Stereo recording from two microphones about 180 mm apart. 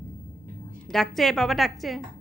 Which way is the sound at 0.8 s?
Centre (ahead or behind).